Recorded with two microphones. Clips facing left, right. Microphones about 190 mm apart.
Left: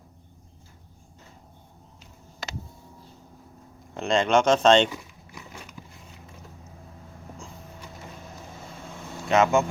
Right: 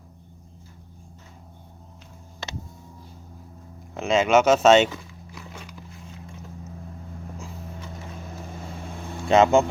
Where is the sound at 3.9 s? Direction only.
Centre (ahead or behind).